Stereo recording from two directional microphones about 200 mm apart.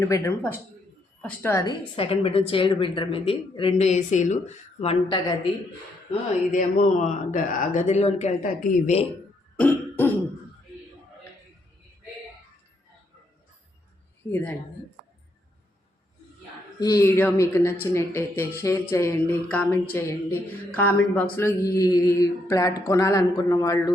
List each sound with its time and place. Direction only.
0.0 s mantra: 15° left (ahead or behind)
2.0 s speech: 30° left (ahead or behind)
6.5 s a man's voice: 40° left (ahead or behind)
9.6 s cough: 10° left (ahead or behind)
14.3 s mantra: 10° left (ahead or behind)
16.8 s mantra: 15° left (ahead or behind)